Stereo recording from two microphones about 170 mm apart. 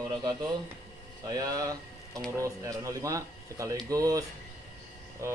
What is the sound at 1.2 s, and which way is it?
Speech, 20° right (ahead or behind).